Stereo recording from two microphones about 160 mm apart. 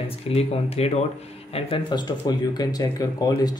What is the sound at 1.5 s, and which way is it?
Speech, 30° left (ahead or behind).